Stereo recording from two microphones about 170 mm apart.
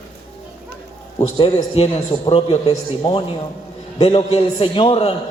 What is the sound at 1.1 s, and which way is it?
A man's voice, 30° left (ahead or behind).